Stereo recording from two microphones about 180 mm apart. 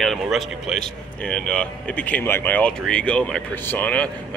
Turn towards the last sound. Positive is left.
turn(degrees=10)  # may be behind; listen again after turning